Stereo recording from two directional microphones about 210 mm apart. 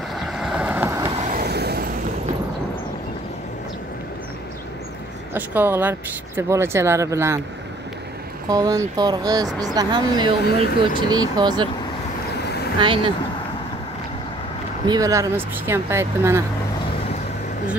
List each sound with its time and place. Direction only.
0.1 s vehicle: centre (ahead or behind)
1.3 s vehicle: 50° right (ahead or behind)
5.3 s speech: 10° right (ahead or behind)
8.5 s speech: 15° right (ahead or behind)
12.8 s speech: 25° right (ahead or behind)
14.9 s speech: 15° right (ahead or behind)